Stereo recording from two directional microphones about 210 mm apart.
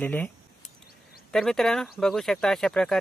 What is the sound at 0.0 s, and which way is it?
Speech, 10° left (ahead or behind).